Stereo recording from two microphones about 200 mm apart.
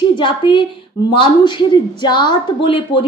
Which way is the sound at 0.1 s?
25° left (ahead or behind).